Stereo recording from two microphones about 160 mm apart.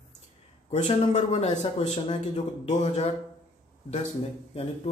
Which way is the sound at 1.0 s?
40° left (ahead or behind).